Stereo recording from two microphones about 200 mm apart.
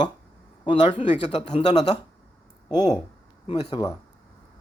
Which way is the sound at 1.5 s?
35° left (ahead or behind).